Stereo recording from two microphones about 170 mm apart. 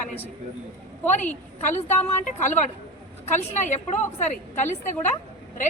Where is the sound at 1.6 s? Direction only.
45° left (ahead or behind).